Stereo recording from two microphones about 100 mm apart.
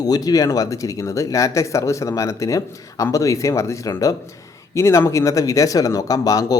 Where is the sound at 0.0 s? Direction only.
40° left (ahead or behind).